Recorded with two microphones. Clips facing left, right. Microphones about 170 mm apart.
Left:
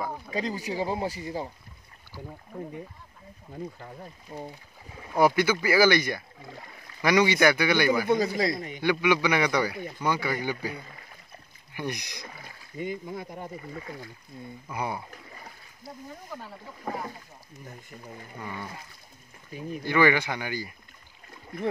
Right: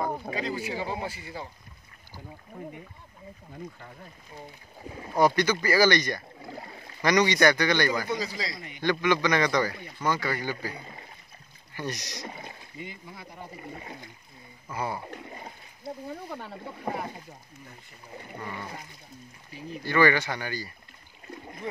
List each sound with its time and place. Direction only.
0.3 s speech: 40° left (ahead or behind)
4.3 s speech: 40° left (ahead or behind)
5.1 s speech: 5° left (ahead or behind)
6.4 s a sound: 35° right (ahead or behind)
7.0 s speech: 5° left (ahead or behind)
8.1 s speech: 55° left (ahead or behind)
8.8 s speech: 10° left (ahead or behind)
11.7 s speech: 15° left (ahead or behind)
12.3 s speech: 25° right (ahead or behind)
12.7 s speech: 50° left (ahead or behind)
13.7 s speech: 25° right (ahead or behind)
14.7 s speech: 15° left (ahead or behind)
15.0 s speech: 25° right (ahead or behind)
19.8 s speech: 15° left (ahead or behind)